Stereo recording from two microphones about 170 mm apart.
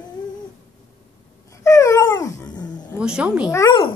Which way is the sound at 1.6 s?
20° left (ahead or behind).